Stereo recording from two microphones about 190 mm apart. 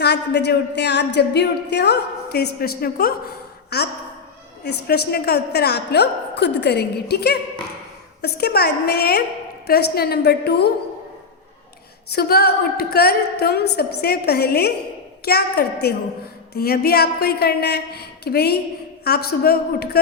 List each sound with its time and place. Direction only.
0.0 s a woman's voice: 60° left (ahead or behind)
12.1 s a woman's voice: 55° left (ahead or behind)